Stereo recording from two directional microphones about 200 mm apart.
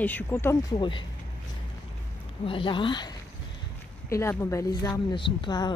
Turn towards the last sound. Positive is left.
turn(degrees=20)  # may be behind; listen again after turning